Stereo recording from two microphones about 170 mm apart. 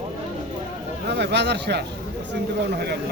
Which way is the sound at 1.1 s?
80° right.